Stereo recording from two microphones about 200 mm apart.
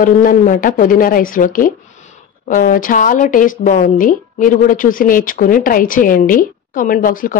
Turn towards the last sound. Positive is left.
turn(degrees=45)  # may be behind; listen again after turning